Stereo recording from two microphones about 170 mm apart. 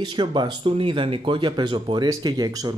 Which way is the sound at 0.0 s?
25° right (ahead or behind).